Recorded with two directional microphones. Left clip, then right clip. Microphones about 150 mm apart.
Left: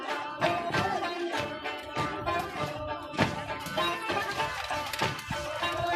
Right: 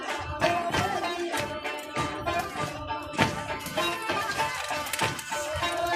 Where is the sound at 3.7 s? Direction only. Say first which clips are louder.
Right 1 dB; 35° right (ahead or behind).